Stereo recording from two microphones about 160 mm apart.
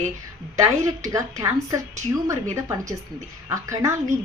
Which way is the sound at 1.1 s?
20° right (ahead or behind).